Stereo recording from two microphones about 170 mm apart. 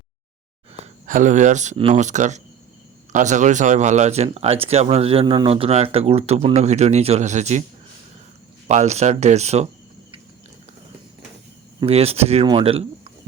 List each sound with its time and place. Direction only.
0.7 s speech: 45° right (ahead or behind)
8.6 s speech: 45° right (ahead or behind)
11.9 s speech: 35° right (ahead or behind)